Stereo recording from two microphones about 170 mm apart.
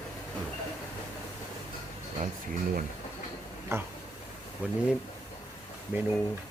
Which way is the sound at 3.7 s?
15° right (ahead or behind).